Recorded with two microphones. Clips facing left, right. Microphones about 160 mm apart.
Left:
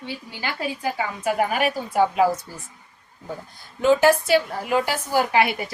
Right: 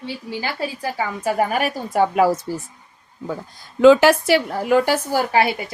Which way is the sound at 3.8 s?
90° right.